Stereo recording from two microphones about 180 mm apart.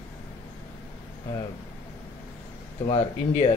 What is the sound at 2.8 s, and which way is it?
Speech, 35° left (ahead or behind).